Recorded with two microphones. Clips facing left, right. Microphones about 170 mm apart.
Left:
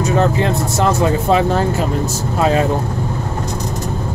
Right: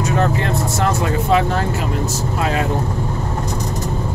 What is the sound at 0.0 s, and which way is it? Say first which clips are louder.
Speech: left 3 dB; 25° left (ahead or behind).